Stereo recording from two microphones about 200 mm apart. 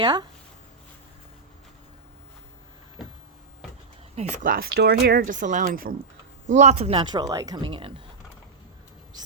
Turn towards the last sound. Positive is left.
turn(degrees=-25)  # may be behind; listen again after turning